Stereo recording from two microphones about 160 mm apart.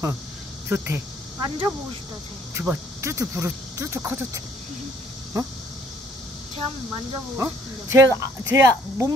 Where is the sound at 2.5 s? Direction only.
15° right (ahead or behind).